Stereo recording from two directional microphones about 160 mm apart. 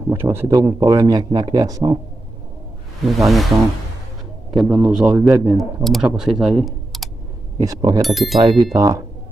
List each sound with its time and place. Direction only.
0.1 s speech: 15° right (ahead or behind)
3.1 s a man's voice: centre (ahead or behind)
4.6 s a man's voice: centre (ahead or behind)
5.9 s speech: centre (ahead or behind)
7.5 s speech: 25° right (ahead or behind)
8.0 s a man's voice: centre (ahead or behind)
8.4 s speech: 25° right (ahead or behind)